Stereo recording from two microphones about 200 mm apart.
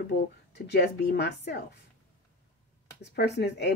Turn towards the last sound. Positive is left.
turn(degrees=55)  # may be behind; listen again after turning